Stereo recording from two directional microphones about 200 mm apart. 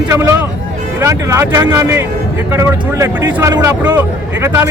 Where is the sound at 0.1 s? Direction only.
10° right (ahead or behind).